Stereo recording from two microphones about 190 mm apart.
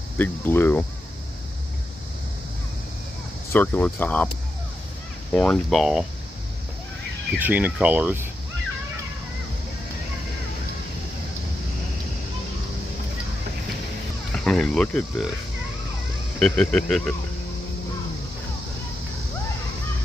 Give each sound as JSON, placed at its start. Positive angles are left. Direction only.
{"t": 0.2, "sound": "speech", "side_deg": 10}
{"t": 3.5, "sound": "speech", "side_deg": 10}
{"t": 5.3, "sound": "speech", "side_deg": 5}
{"t": 7.3, "sound": "speech", "side_deg": -10}
{"t": 14.3, "sound": "speech", "side_deg": 5}
{"t": 16.3, "sound": "speech", "side_deg": 5}